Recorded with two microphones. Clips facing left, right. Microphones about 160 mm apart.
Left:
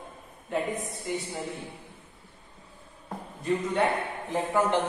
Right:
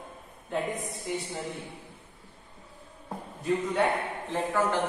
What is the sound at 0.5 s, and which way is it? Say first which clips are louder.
Speech: left 1 dB; centre (ahead or behind).